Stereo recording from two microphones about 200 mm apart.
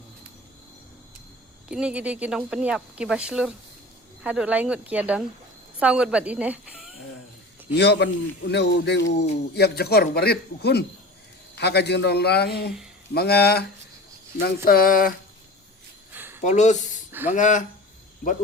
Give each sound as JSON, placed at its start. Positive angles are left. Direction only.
{"t": 1.6, "sound": "speech", "side_deg": -5}
{"t": 7.7, "sound": "a man's voice", "side_deg": 55}
{"t": 16.1, "sound": "a sound", "side_deg": -10}
{"t": 16.4, "sound": "speech", "side_deg": 35}
{"t": 17.1, "sound": "a sound", "side_deg": -10}
{"t": 17.3, "sound": "speech", "side_deg": 40}